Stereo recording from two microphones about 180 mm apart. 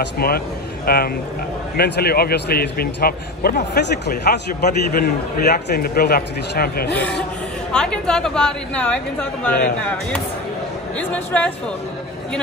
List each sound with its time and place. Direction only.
0.2 s speech: 55° left (ahead or behind)
4.6 s a man's voice: 45° left (ahead or behind)
5.0 s speech: 60° left (ahead or behind)
7.7 s a woman's voice: 5° left (ahead or behind)
11.0 s speech: 5° left (ahead or behind)